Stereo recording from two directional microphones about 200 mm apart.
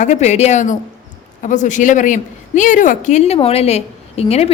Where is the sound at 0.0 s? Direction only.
35° left (ahead or behind).